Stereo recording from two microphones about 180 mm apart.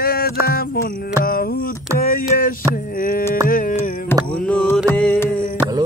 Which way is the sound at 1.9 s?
55° left (ahead or behind).